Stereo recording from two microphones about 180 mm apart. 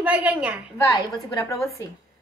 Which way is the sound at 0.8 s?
20° left (ahead or behind).